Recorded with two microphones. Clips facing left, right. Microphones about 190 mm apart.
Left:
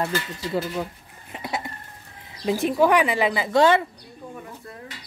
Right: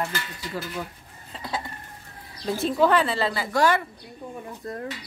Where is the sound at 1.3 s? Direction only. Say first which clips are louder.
Left 2 dB; 15° left (ahead or behind).